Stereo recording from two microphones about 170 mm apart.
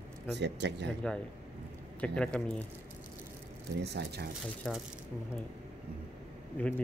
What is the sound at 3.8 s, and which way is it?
Speech, 75° right (ahead or behind).